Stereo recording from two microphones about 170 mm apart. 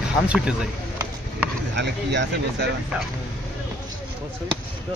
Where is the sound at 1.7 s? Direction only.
90° right.